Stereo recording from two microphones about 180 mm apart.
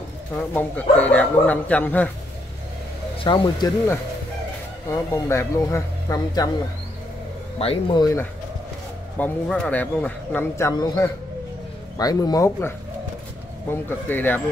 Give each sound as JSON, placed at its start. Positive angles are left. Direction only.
{"t": 0.4, "sound": "a man's voice", "side_deg": 10}
{"t": 3.3, "sound": "a man's voice", "side_deg": 25}
{"t": 7.5, "sound": "a man's voice", "side_deg": 30}
{"t": 9.2, "sound": "a man's voice", "side_deg": 5}